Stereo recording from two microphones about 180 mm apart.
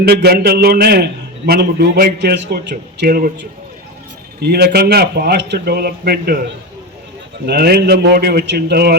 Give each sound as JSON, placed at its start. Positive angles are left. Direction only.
{"t": 0.0, "sound": "a man's voice", "side_deg": -60}
{"t": 7.4, "sound": "a man's voice", "side_deg": -60}